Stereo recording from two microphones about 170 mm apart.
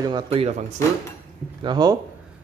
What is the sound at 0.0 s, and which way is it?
Cutlery, 30° right (ahead or behind).